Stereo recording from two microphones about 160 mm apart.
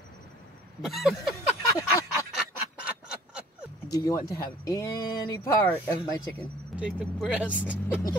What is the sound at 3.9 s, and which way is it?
Speech, 20° left (ahead or behind).